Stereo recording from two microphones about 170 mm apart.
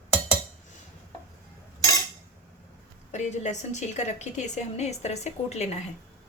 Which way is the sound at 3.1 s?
45° left (ahead or behind).